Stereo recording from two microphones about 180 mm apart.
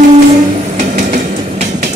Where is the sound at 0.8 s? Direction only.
45° right (ahead or behind).